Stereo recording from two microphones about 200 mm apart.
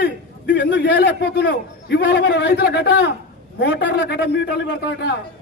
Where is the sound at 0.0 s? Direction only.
60° left (ahead or behind).